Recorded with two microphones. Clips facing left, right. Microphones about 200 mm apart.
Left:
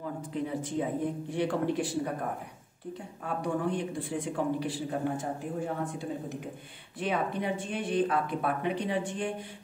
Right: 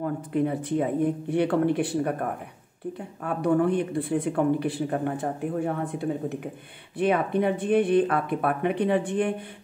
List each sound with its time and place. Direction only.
0.0 s speech: 60° right (ahead or behind)
3.3 s speech: 60° right (ahead or behind)